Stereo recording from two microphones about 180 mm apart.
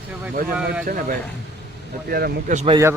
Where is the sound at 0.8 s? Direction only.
50° right (ahead or behind).